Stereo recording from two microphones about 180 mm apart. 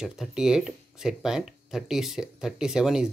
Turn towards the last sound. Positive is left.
turn(degrees=-5)  # may be behind; listen again after turning